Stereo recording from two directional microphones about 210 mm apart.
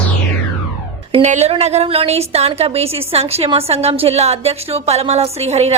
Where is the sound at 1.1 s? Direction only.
35° right (ahead or behind).